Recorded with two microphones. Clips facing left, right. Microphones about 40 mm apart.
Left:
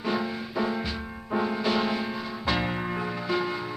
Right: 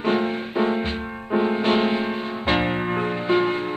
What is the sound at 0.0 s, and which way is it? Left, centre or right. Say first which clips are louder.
Music: right 7 dB; right.